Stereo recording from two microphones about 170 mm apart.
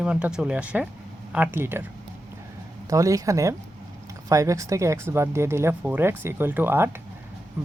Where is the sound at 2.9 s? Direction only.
20° right (ahead or behind).